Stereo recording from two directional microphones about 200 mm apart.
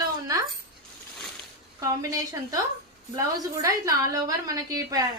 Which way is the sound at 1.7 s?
15° right (ahead or behind).